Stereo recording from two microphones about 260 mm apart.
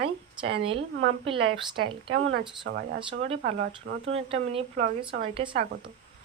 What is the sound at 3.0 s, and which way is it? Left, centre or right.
Speech, right.